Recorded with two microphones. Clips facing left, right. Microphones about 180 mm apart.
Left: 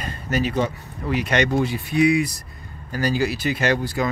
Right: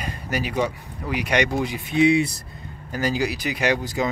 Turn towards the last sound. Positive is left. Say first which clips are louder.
# left 1 dB
turn(degrees=-20)  # may be behind; listen again after turning